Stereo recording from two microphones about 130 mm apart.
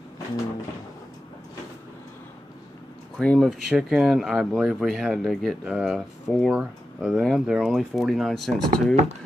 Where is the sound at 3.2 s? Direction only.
5° left (ahead or behind).